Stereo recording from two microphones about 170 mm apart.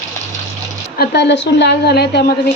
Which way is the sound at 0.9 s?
75° left (ahead or behind).